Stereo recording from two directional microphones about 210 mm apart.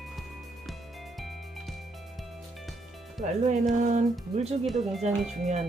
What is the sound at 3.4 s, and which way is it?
Speech, 35° right (ahead or behind).